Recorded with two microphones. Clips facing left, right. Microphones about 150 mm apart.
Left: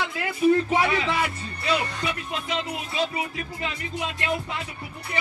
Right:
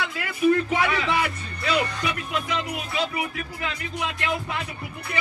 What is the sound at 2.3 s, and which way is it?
Speech, 25° left (ahead or behind).